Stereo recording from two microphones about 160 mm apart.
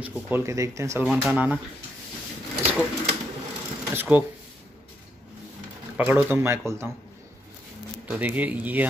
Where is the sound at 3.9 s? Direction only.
10° right (ahead or behind).